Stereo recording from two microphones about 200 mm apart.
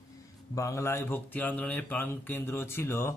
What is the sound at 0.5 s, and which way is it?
A man's voice, 15° left (ahead or behind).